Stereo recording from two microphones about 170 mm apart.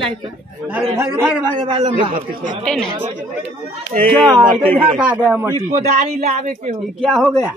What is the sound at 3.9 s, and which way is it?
Speech, 50° right (ahead or behind).